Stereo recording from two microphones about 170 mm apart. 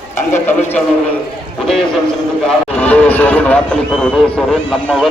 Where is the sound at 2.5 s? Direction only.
10° left (ahead or behind).